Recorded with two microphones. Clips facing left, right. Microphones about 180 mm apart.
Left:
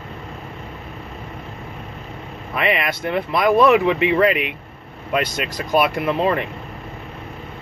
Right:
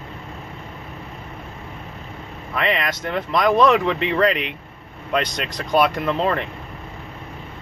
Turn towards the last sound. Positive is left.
turn(degrees=15)  # may be behind; listen again after turning